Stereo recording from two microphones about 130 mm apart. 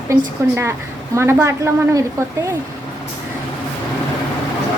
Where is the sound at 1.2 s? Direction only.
20° right (ahead or behind).